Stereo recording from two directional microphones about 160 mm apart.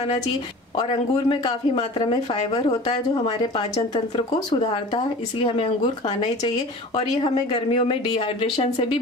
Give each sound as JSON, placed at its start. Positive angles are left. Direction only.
{"t": 1.3, "sound": "speech", "side_deg": 35}